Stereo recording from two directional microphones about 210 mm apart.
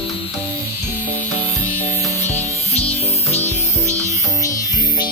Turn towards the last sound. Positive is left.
turn(degrees=-15)  # may be behind; listen again after turning